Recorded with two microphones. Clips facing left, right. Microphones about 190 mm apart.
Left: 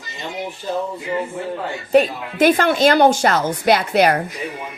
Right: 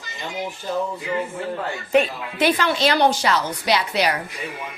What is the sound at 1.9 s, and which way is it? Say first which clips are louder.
A woman's voice: left 4 dB; 45° left (ahead or behind).